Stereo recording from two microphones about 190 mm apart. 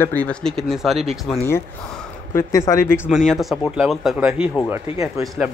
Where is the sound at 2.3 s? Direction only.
15° left (ahead or behind).